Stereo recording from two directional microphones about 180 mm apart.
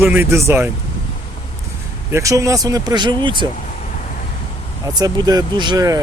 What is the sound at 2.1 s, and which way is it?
Speech, 15° right (ahead or behind).